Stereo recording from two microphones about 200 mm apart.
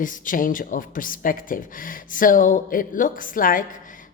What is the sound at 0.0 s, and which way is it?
Speech, 40° left (ahead or behind).